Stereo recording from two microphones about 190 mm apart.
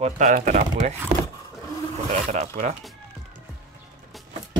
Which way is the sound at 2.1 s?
40° right (ahead or behind).